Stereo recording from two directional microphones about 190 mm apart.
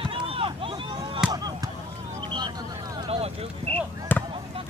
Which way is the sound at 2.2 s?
25° right (ahead or behind).